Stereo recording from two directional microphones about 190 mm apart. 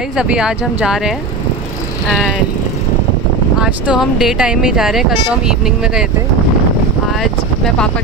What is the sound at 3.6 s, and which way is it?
Speech, 5° right (ahead or behind).